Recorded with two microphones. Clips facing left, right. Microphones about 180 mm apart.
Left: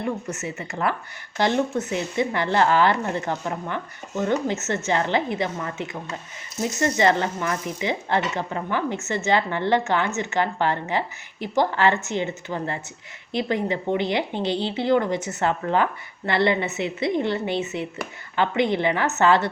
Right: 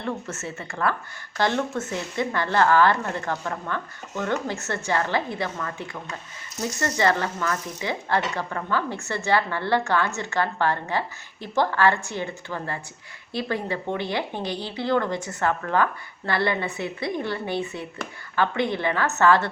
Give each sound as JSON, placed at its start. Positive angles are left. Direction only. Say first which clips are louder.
{"t": 0.0, "sound": "speech", "louder": "left 3 dB", "side_deg": 15}